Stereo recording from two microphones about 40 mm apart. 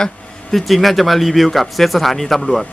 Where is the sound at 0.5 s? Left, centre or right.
Centre.